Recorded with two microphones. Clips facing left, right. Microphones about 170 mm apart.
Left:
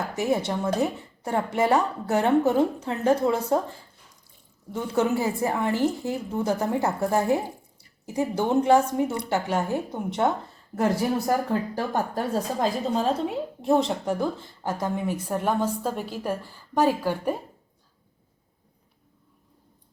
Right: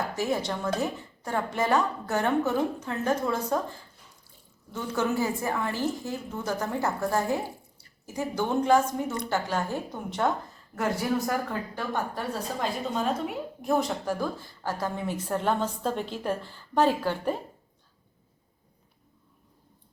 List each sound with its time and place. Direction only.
0.2 s a woman's voice: 25° left (ahead or behind)
4.7 s a woman's voice: 20° left (ahead or behind)
11.3 s a woman's voice: 35° left (ahead or behind); by 17.3 s 10° left (ahead or behind)